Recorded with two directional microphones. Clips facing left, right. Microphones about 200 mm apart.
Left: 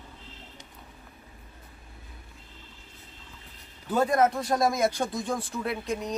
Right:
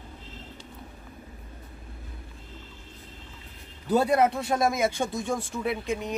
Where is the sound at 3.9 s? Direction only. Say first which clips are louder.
Right 1 dB; 10° right (ahead or behind).